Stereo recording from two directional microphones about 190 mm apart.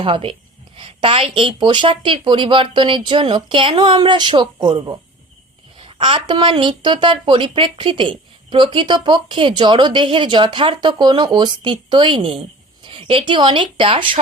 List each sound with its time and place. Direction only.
0.0 s speech: 30° right (ahead or behind)